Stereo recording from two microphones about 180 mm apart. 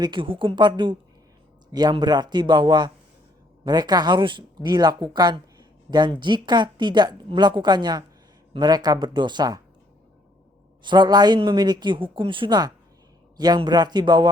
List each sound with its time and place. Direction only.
0.0 s speech: 25° right (ahead or behind)
10.8 s speech: 25° right (ahead or behind)